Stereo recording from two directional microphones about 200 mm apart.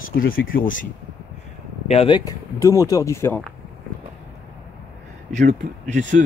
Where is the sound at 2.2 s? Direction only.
15° left (ahead or behind).